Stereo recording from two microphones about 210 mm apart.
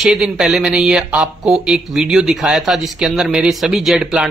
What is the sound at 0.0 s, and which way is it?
Speech, centre (ahead or behind).